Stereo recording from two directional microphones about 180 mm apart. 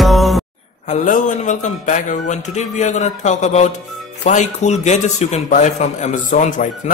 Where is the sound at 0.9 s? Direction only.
45° left (ahead or behind).